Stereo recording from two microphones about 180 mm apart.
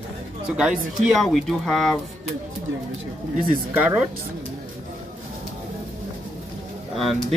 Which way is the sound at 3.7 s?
10° right (ahead or behind).